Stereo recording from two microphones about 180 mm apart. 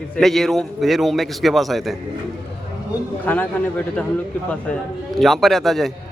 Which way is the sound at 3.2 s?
10° left (ahead or behind).